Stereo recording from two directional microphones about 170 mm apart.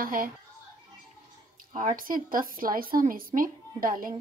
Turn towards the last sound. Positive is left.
turn(degrees=-55)  # may be behind; listen again after turning